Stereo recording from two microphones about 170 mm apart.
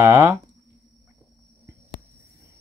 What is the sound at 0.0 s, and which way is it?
Speech, 15° right (ahead or behind).